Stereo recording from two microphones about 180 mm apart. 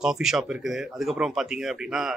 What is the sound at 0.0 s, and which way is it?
Speech, 5° right (ahead or behind).